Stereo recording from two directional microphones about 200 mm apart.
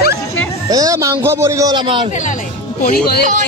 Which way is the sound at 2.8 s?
50° left (ahead or behind).